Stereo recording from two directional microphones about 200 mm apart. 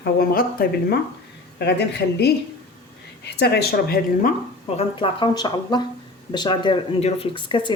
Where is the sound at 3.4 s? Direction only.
55° left (ahead or behind).